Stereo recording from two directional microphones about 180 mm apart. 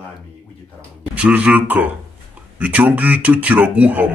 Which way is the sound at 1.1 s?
5° right (ahead or behind).